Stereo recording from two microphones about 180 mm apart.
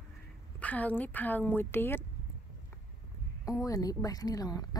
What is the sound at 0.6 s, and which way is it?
A woman's voice, 10° left (ahead or behind).